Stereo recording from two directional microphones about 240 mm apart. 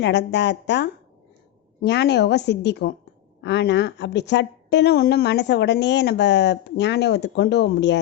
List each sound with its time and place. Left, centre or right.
0.0 s a woman's voice: left